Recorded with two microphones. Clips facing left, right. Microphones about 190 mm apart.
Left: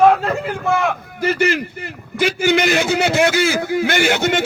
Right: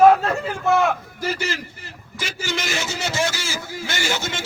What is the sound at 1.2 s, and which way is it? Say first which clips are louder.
A man's voice: left 8 dB; 60° left (ahead or behind).